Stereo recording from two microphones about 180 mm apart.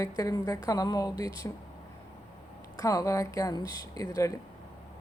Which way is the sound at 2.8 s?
20° left (ahead or behind).